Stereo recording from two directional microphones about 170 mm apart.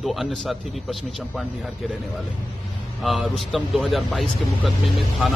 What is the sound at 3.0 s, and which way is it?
A man's voice, centre (ahead or behind).